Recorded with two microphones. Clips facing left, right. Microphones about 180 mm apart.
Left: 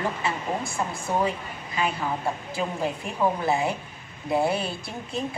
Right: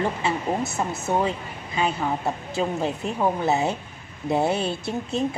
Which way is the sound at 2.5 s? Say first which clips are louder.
Right 5 dB; 25° right (ahead or behind).